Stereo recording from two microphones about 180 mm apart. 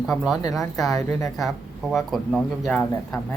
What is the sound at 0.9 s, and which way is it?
Speech, 20° left (ahead or behind).